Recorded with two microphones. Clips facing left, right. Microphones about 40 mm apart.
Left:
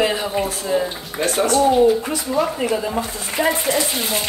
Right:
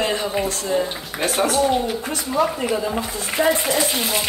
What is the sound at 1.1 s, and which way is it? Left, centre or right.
Speech, centre.